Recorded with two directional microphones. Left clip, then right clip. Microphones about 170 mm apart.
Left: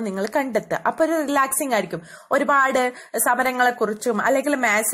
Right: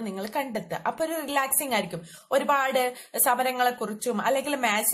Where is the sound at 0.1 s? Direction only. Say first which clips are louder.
Left 8 dB; 35° left (ahead or behind).